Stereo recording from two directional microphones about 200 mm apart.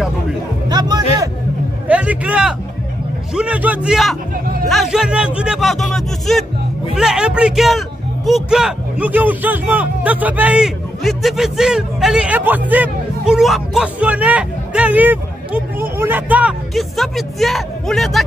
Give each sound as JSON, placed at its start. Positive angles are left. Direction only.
{"t": 0.7, "sound": "music", "side_deg": -20}
{"t": 1.9, "sound": "speech", "side_deg": -5}